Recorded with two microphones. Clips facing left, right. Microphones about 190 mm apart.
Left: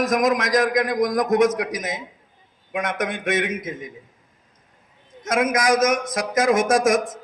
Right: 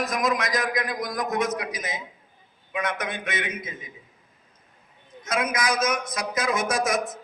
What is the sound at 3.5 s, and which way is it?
Speech, 90° left.